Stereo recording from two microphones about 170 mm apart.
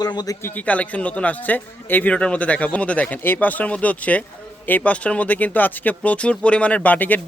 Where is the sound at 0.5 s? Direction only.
10° left (ahead or behind).